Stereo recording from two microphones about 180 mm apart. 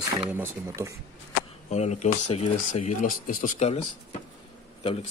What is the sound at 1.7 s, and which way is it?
Speech, 40° left (ahead or behind).